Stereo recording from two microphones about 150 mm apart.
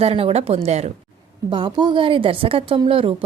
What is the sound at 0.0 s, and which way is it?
Speech, 40° right (ahead or behind).